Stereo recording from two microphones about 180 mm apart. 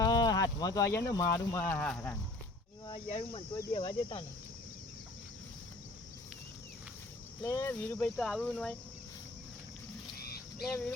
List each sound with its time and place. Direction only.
0.0 s a sound: 20° left (ahead or behind)
1.5 s speech: 15° left (ahead or behind)
3.1 s speech: 40° left (ahead or behind)
7.4 s speech: 15° left (ahead or behind)
10.2 s a sound: 60° left (ahead or behind)
10.7 s speech: 10° left (ahead or behind)